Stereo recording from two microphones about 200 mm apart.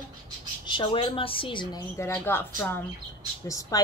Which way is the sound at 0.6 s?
25° left (ahead or behind).